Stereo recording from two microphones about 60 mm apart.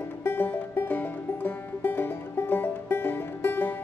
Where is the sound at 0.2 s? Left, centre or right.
Left.